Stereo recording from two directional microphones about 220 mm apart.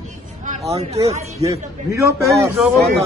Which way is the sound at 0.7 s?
30° right (ahead or behind).